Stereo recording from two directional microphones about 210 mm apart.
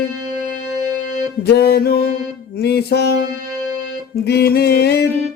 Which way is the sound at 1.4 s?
50° left (ahead or behind).